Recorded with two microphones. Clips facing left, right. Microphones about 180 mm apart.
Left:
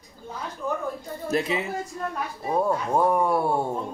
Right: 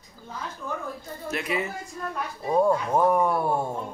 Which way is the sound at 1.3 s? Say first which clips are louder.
Left 5 dB; 30° left (ahead or behind).